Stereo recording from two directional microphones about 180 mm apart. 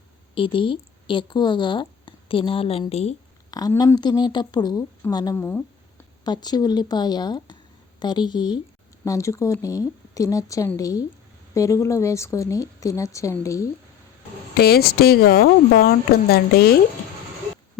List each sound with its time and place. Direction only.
0.3 s speech: 30° left (ahead or behind)
3.5 s a woman's voice: 20° left (ahead or behind)
14.5 s speech: 60° left (ahead or behind)